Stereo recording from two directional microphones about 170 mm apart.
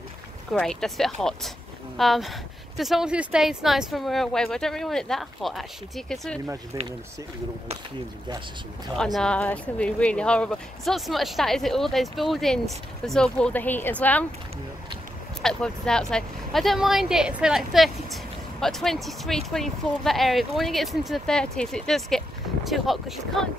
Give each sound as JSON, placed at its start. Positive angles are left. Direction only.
{"t": 0.5, "sound": "speech", "side_deg": 5}
{"t": 6.4, "sound": "speech", "side_deg": -15}
{"t": 8.9, "sound": "speech", "side_deg": 5}
{"t": 15.4, "sound": "speech", "side_deg": 5}